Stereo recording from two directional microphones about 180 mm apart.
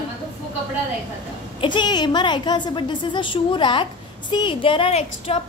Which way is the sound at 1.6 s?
25° left (ahead or behind).